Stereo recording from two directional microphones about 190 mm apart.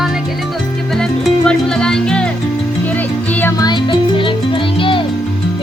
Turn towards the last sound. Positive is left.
turn(degrees=25)  # may be behind; listen again after turning